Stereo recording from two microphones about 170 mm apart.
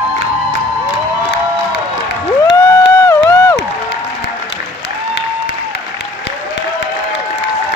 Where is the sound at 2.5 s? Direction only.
15° left (ahead or behind).